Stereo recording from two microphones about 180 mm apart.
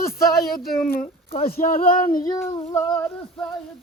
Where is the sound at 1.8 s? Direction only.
25° left (ahead or behind).